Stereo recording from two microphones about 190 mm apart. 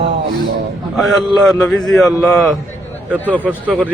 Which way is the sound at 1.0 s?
Centre (ahead or behind).